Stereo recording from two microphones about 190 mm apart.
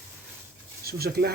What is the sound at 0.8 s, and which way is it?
Speech, 55° right (ahead or behind).